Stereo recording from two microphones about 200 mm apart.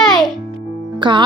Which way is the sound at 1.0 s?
25° right (ahead or behind).